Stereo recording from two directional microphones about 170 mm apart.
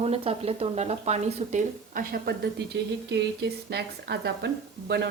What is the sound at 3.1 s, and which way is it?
Speech, 85° right.